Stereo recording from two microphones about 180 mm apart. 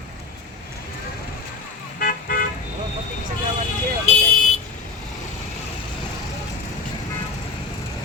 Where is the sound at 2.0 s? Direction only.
55° left (ahead or behind).